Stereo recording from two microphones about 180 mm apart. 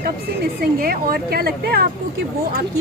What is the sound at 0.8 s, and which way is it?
Speech, 55° right (ahead or behind).